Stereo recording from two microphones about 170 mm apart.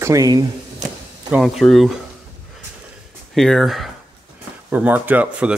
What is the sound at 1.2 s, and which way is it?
Speech, 5° right (ahead or behind).